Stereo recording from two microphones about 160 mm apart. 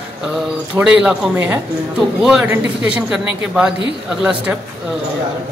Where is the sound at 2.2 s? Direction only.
5° right (ahead or behind).